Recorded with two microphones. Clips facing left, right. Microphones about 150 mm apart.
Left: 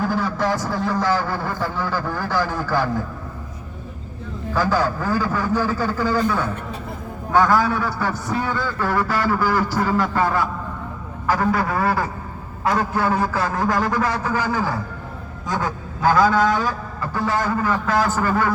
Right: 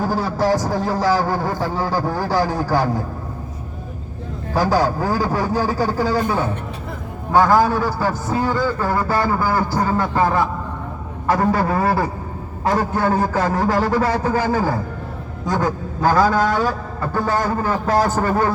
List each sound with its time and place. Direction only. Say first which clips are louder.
0.0 s a man's voice: right 2 dB; 35° right (ahead or behind)
4.5 s a man's voice: right 3 dB; 40° right (ahead or behind)
7.3 s a man's voice: right 3 dB; 25° right (ahead or behind)
11.3 s a man's voice: right 3 dB; 35° right (ahead or behind)